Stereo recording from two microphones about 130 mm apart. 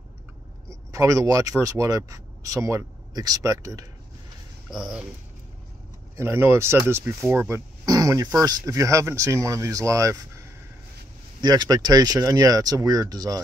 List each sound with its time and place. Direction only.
0.7 s a sound: 25° right (ahead or behind)
1.6 s speech: 25° right (ahead or behind)
4.6 s speech: 5° right (ahead or behind)
6.1 s speech: 20° right (ahead or behind)
11.4 s speech: 30° right (ahead or behind)